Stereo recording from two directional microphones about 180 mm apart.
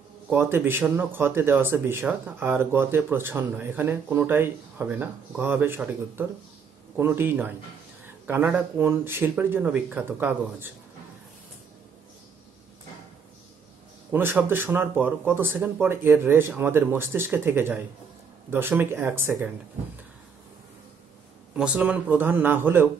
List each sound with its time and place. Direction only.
0.3 s speech: 10° right (ahead or behind)
14.1 s speech: 10° right (ahead or behind)
21.5 s speech: 10° right (ahead or behind)